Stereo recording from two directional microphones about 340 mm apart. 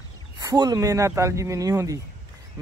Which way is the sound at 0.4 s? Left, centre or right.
Centre.